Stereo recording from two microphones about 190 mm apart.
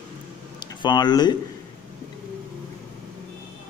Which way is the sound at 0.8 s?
25° left (ahead or behind).